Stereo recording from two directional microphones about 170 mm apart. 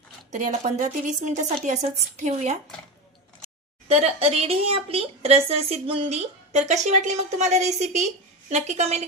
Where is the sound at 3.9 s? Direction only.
35° right (ahead or behind).